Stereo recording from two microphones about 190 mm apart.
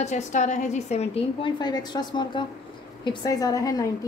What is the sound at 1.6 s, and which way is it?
A woman's voice, 20° left (ahead or behind).